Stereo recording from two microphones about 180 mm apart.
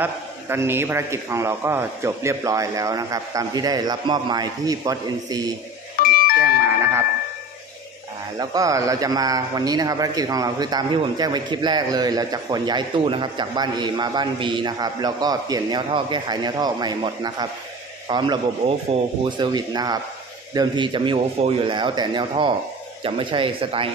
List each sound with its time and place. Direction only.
0.0 s a man's voice: 15° right (ahead or behind)
5.9 s doorbell: 55° left (ahead or behind)
8.4 s a man's voice: 20° right (ahead or behind)